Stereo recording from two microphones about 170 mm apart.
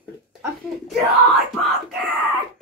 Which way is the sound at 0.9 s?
Centre (ahead or behind).